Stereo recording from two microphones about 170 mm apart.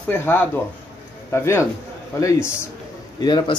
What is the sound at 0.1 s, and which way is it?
Speech, 10° left (ahead or behind).